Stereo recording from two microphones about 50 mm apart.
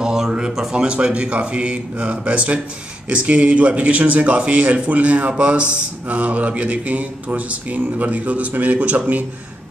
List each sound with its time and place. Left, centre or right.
0.0 s mantra: centre; by 9.2 s right